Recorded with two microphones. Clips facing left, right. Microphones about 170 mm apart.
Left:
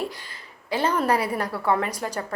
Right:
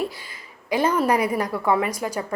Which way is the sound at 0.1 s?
10° right (ahead or behind).